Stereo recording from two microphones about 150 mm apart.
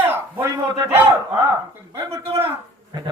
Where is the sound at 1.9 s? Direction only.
15° right (ahead or behind).